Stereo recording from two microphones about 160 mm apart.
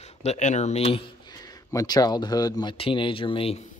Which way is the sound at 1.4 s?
25° left (ahead or behind).